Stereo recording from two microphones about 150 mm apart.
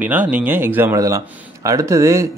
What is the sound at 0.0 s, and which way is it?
A man's voice, 10° right (ahead or behind).